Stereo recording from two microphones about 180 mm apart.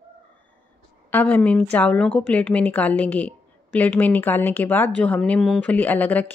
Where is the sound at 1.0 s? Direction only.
10° left (ahead or behind).